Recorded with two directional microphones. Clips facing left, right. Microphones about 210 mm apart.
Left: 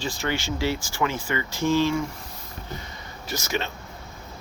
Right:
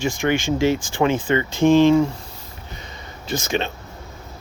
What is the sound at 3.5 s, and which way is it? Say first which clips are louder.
Speech: right 4 dB; 20° right (ahead or behind).